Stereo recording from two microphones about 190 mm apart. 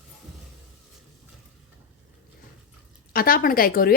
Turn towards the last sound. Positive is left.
turn(degrees=50)  # may be behind; listen again after turning